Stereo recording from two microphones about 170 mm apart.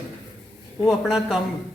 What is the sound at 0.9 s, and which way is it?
Speech, 5° right (ahead or behind).